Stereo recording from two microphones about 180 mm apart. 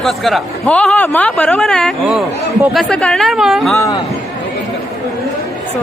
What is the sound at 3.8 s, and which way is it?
Speech, 20° left (ahead or behind).